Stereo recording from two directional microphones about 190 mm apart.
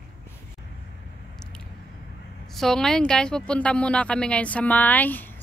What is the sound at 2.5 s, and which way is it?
Speech, centre (ahead or behind).